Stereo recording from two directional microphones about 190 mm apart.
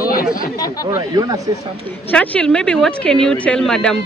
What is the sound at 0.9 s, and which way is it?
Speech, 20° right (ahead or behind).